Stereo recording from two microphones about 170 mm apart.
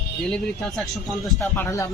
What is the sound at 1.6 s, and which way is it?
Speech, 20° left (ahead or behind).